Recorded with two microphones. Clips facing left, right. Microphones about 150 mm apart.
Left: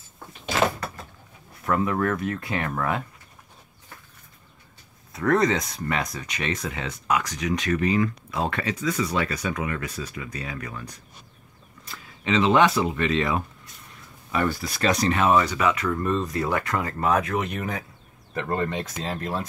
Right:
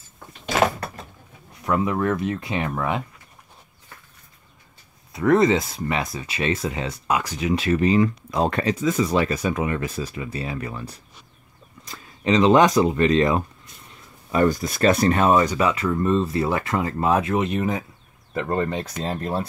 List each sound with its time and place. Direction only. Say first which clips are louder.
1.7 s speech: right 2 dB; 15° right (ahead or behind)
5.2 s speech: right 4 dB; 20° right (ahead or behind); by 8.7 s 40° right (ahead or behind)
8.7 s speech: right 5 dB; 30° right (ahead or behind)
11.8 s speech: right 6 dB; 40° right (ahead or behind)
15.9 s speech: right 4 dB; 20° right (ahead or behind); by 19.4 s 35° right (ahead or behind)